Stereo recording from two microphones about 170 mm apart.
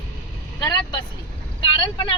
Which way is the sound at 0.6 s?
20° left (ahead or behind).